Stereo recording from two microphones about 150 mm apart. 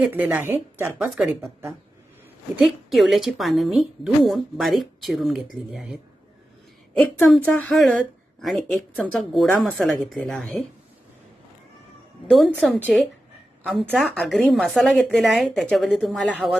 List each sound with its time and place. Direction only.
0.1 s a woman's voice: 15° right (ahead or behind)
0.9 s a woman's voice: 5° right (ahead or behind)
1.4 s a woman's voice: 15° right (ahead or behind)
2.6 s a woman's voice: centre (ahead or behind)
7.2 s a woman's voice: 10° left (ahead or behind)
12.3 s a woman's voice: centre (ahead or behind)